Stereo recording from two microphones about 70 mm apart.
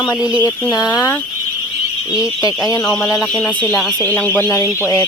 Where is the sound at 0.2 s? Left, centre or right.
Centre.